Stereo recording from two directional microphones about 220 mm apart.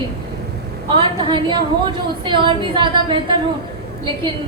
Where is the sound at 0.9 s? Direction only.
20° right (ahead or behind).